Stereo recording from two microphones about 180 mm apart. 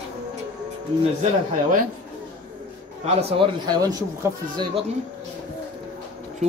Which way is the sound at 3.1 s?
35° right (ahead or behind).